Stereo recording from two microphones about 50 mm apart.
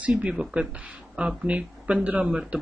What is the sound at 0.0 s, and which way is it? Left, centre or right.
Speech, right.